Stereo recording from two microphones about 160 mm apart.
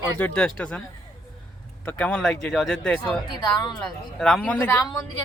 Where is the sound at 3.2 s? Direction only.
30° left (ahead or behind).